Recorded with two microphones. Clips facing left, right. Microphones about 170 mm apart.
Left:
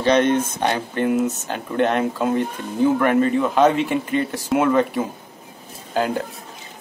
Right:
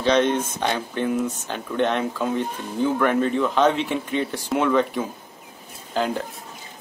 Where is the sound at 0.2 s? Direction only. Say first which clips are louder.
Left 3 dB; 55° left (ahead or behind).